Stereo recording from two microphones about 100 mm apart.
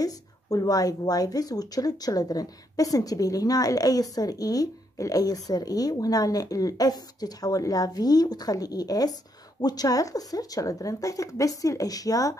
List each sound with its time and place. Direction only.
0.0 s speech: 40° left (ahead or behind)